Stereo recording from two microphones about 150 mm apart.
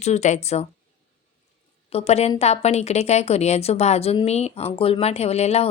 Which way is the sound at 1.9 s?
45° left (ahead or behind).